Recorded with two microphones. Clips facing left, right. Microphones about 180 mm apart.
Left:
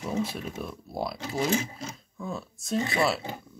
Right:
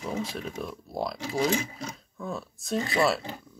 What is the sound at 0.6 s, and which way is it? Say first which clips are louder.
Speech: right 1 dB; 5° left (ahead or behind).